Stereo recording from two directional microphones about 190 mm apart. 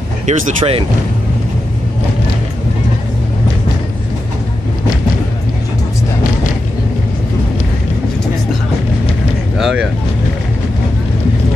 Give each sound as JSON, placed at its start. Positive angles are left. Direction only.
{"t": 0.3, "sound": "speech", "side_deg": -30}
{"t": 9.6, "sound": "speech", "side_deg": 0}